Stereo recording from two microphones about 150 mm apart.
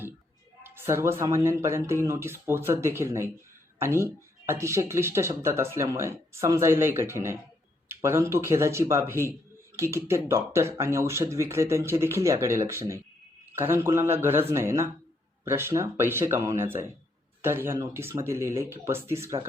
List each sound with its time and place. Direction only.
0.6 s speech: 15° right (ahead or behind)